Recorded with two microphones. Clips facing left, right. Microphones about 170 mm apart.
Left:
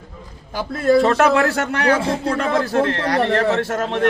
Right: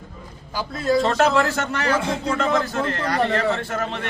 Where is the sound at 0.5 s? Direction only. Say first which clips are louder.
Left 5 dB; 55° left (ahead or behind).